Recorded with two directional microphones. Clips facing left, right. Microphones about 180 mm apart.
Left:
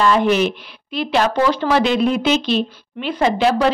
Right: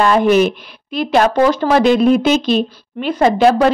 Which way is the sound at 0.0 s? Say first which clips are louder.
Right 4 dB; 50° right (ahead or behind).